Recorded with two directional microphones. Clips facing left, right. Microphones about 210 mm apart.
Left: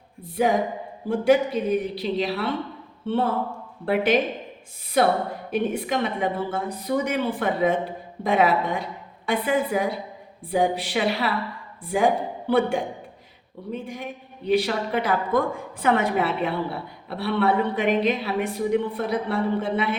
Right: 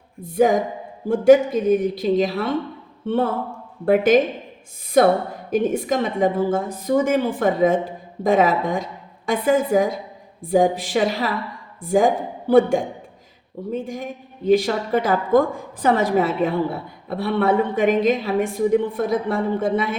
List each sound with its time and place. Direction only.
0.2 s a woman's voice: 45° right (ahead or behind)